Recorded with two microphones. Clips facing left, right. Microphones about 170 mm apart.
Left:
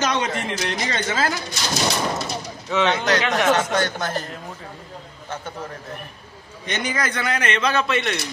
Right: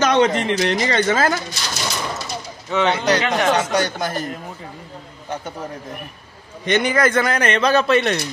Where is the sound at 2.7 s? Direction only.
10° right (ahead or behind).